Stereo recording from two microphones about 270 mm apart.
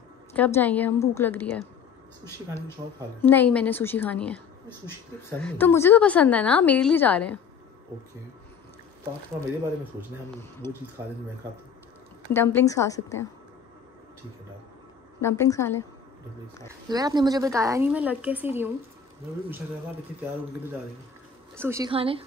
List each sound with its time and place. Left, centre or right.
0.3 s a woman's voice: centre
3.2 s a woman's voice: centre
11.0 s a woman's voice: centre
12.3 s a woman's voice: centre
15.1 s a woman's voice: centre
16.9 s a woman's voice: centre
21.5 s a woman's voice: centre